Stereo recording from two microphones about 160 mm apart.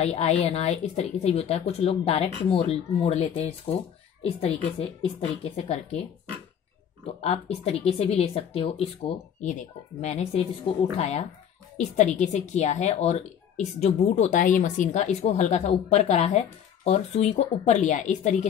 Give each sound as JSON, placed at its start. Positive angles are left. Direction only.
{"t": 0.0, "sound": "speech", "side_deg": 40}
{"t": 7.2, "sound": "speech", "side_deg": 40}